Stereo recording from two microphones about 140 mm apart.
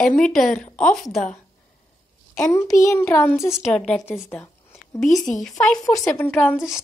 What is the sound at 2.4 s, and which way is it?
A child's voice, 20° left (ahead or behind).